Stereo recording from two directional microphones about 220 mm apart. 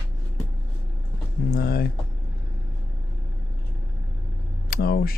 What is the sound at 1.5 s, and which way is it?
Speech, 45° left (ahead or behind).